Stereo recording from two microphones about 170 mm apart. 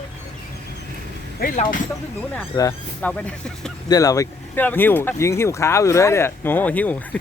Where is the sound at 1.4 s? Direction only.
60° left (ahead or behind).